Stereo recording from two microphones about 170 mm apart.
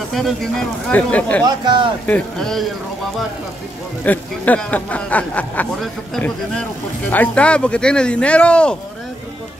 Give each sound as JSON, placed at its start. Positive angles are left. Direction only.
{"t": 0.1, "sound": "speech", "side_deg": 0}
{"t": 1.4, "sound": "speech", "side_deg": -25}
{"t": 2.0, "sound": "speech", "side_deg": 5}
{"t": 4.0, "sound": "speech", "side_deg": 10}